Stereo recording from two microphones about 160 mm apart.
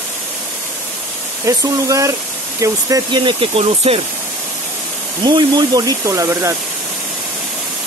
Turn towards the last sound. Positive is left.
turn(degrees=-20)  # may be behind; listen again after turning